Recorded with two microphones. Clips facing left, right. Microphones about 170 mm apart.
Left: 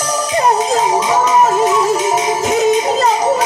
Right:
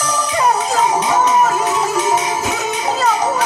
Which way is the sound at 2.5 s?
40° left (ahead or behind).